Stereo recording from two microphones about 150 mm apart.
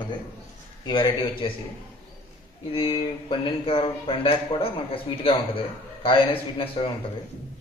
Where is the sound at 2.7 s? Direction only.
35° left (ahead or behind).